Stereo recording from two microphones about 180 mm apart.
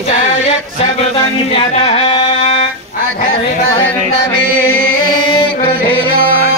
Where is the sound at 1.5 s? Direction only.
30° left (ahead or behind).